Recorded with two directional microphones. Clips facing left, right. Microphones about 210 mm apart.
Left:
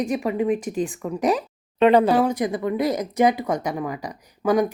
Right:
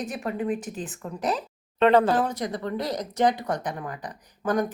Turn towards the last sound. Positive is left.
turn(degrees=10)  # may be behind; listen again after turning